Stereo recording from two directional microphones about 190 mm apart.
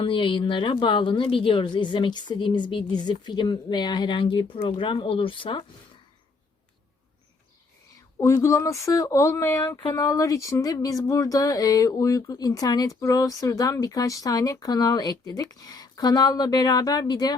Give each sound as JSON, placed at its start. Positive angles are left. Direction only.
{"t": 0.0, "sound": "speech", "side_deg": 25}
{"t": 8.2, "sound": "speech", "side_deg": 15}